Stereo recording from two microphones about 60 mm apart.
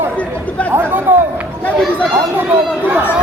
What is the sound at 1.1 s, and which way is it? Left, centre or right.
Speech, right.